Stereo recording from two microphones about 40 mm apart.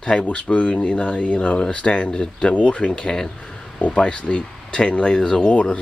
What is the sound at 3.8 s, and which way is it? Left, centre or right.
Speech, left.